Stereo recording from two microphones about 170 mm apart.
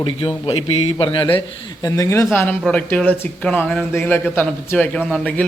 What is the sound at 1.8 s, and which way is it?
A man's voice, 15° left (ahead or behind).